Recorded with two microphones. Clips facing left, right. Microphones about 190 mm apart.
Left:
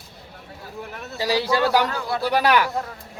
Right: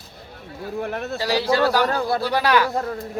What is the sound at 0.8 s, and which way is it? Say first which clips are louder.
Speech: right 10 dB; 60° right (ahead or behind).